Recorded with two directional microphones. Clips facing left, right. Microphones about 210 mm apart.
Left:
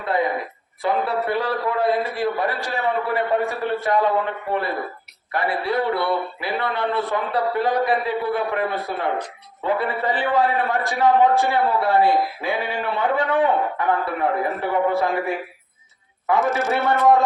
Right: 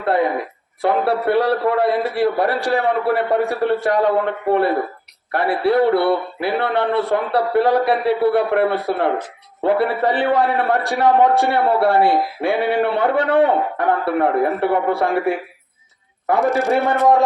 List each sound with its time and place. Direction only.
0.0 s a sound: 65° right (ahead or behind)
0.8 s a man's voice: 65° right (ahead or behind)
16.4 s a man's voice: centre (ahead or behind)